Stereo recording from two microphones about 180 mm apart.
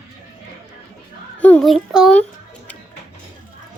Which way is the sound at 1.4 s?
5° left (ahead or behind).